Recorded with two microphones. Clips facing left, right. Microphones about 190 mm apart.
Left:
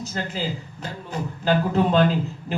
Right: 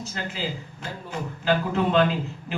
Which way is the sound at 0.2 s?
40° left (ahead or behind).